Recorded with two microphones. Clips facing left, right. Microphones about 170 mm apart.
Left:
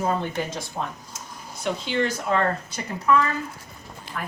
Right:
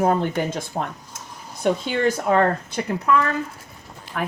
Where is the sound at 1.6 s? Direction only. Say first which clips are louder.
Right 4 dB; 50° right (ahead or behind).